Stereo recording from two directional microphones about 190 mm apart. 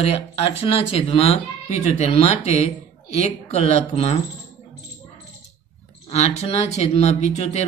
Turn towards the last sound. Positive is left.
turn(degrees=35)  # may be behind; listen again after turning